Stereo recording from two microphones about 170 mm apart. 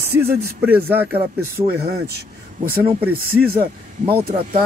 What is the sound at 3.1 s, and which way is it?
Speech, 60° right (ahead or behind).